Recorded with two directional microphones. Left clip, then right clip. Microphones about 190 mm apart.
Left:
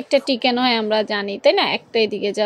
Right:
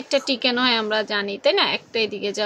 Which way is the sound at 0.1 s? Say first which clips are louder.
Left 3 dB; 20° left (ahead or behind).